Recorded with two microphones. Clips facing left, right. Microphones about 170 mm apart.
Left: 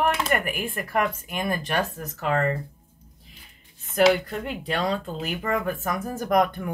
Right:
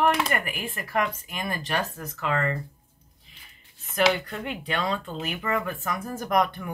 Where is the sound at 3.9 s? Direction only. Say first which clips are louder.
Left 4 dB; 35° left (ahead or behind).